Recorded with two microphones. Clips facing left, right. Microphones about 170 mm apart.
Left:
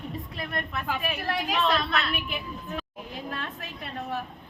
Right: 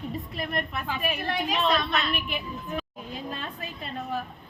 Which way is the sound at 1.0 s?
Centre (ahead or behind).